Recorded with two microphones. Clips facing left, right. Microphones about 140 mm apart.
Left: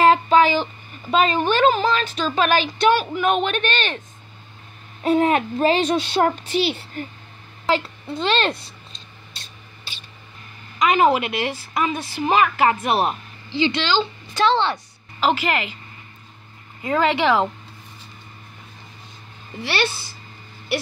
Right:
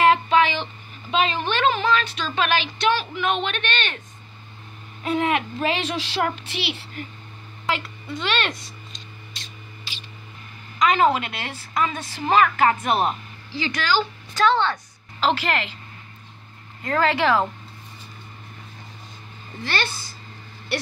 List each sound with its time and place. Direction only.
0.0 s a sound: 35° left (ahead or behind)
1.1 s speech: 40° left (ahead or behind)
5.0 s a child's voice: 35° left (ahead or behind)
10.8 s a woman's voice: 10° left (ahead or behind)
13.6 s a woman's voice: 25° left (ahead or behind)
15.1 s a woman's voice: 5° left (ahead or behind)
16.8 s a woman's voice: 10° left (ahead or behind)
19.6 s a woman's voice: 10° left (ahead or behind)